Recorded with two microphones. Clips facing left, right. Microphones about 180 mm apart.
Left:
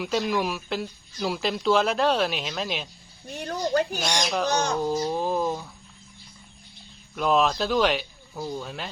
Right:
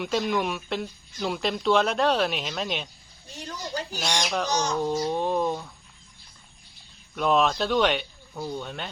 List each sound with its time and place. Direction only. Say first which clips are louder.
0.0 s speech: even; centre (ahead or behind)
3.4 s a sound: left 9 dB; 60° left (ahead or behind)
4.0 s speech: left 2 dB; 5° left (ahead or behind)
7.2 s speech: even; centre (ahead or behind)